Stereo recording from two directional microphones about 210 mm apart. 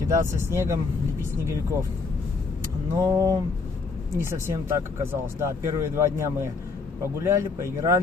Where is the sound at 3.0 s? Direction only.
15° right (ahead or behind).